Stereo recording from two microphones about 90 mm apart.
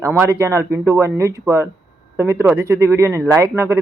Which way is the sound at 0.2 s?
25° right (ahead or behind).